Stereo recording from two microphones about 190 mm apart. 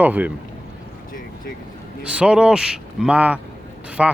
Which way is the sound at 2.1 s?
5° right (ahead or behind).